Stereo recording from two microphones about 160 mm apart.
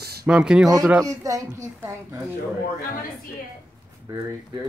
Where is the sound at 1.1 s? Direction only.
20° right (ahead or behind).